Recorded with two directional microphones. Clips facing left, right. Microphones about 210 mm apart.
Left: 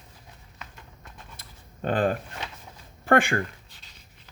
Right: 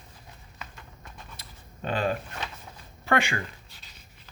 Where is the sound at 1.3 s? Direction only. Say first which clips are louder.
Right 1 dB; 50° left (ahead or behind).